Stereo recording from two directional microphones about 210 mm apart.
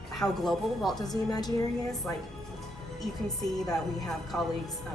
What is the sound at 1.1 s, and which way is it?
Speech, 20° left (ahead or behind).